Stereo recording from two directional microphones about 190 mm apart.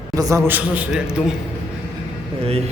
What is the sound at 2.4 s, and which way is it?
Speech, 30° right (ahead or behind).